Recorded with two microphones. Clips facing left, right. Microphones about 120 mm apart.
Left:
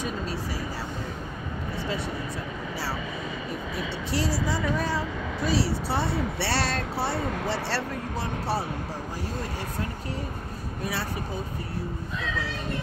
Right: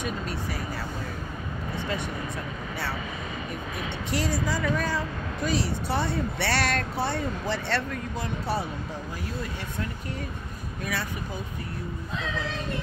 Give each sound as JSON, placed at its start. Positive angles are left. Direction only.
{"t": 0.0, "sound": "vehicle", "side_deg": 30}
{"t": 1.8, "sound": "vehicle", "side_deg": 30}
{"t": 4.1, "sound": "a woman's voice", "side_deg": 30}
{"t": 7.2, "sound": "speech", "side_deg": 75}
{"t": 7.4, "sound": "speech", "side_deg": 35}